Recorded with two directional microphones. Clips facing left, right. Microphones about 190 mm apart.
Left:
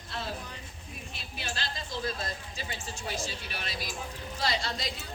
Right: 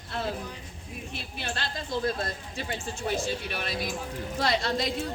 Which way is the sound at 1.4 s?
55° right (ahead or behind).